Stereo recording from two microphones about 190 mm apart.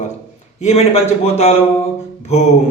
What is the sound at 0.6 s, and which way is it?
Mantra, 35° left (ahead or behind).